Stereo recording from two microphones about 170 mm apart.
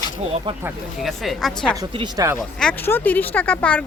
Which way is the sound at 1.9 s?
30° right (ahead or behind).